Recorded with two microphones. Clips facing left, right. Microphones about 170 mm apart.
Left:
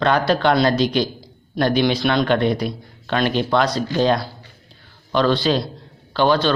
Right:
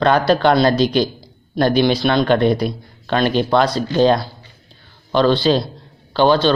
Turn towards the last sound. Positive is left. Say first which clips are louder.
# right 3 dB
turn(degrees=-30)  # may be behind; listen again after turning